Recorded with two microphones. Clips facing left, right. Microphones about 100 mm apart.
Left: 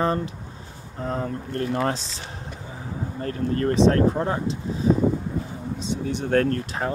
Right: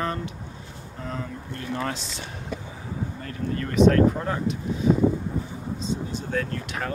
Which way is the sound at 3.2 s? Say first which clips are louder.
Left 9 dB; 40° left (ahead or behind).